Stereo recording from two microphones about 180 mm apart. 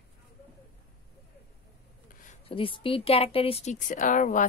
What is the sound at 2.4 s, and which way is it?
Speech, 30° left (ahead or behind).